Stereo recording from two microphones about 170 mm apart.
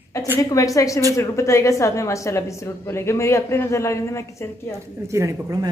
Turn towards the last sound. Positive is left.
turn(degrees=-20)  # may be behind; listen again after turning